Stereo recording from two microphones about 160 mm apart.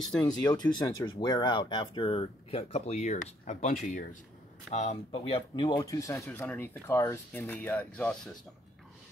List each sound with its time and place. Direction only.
0.5 s speech: 25° left (ahead or behind); by 4.2 s 55° left (ahead or behind)
4.6 s speech: 45° left (ahead or behind); by 8.2 s 5° left (ahead or behind)